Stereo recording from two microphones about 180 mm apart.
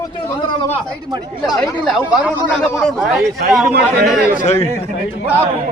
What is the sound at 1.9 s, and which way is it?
Speech, centre (ahead or behind).